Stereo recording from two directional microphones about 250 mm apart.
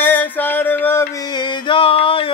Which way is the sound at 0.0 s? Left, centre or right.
Centre.